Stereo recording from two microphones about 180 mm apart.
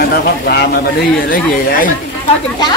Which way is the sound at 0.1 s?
65° left (ahead or behind).